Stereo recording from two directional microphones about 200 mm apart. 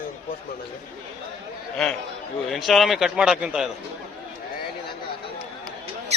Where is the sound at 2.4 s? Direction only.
Centre (ahead or behind).